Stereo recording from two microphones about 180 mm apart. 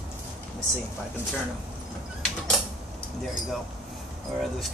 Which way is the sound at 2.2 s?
Centre (ahead or behind).